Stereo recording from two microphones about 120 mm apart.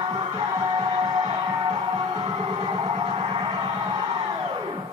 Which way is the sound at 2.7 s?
45° right (ahead or behind).